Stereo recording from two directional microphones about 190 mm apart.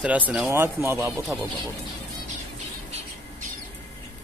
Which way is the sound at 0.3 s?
10° right (ahead or behind).